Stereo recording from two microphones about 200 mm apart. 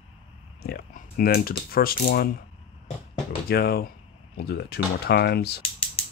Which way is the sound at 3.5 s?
50° left (ahead or behind).